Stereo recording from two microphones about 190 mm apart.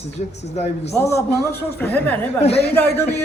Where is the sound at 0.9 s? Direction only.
15° left (ahead or behind).